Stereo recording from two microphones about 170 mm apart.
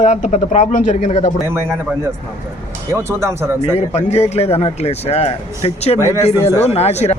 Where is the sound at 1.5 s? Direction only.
15° right (ahead or behind).